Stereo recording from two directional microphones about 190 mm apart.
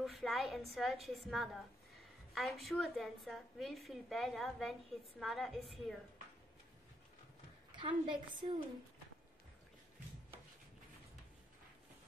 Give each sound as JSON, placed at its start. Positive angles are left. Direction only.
{"t": 0.0, "sound": "a woman's voice", "side_deg": 0}
{"t": 7.7, "sound": "a woman's voice", "side_deg": -25}